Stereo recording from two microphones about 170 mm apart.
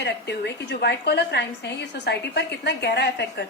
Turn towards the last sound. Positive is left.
turn(degrees=80)